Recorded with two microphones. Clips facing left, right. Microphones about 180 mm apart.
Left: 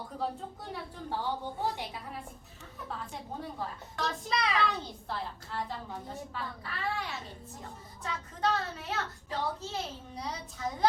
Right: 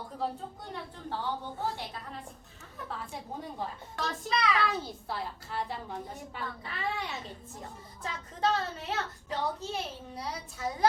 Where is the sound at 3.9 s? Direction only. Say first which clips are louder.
Even; centre (ahead or behind).